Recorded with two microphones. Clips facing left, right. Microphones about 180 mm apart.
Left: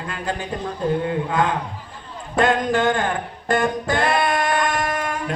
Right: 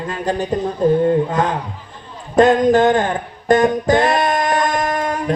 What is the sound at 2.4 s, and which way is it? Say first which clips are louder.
Music: right 7 dB; 40° right (ahead or behind).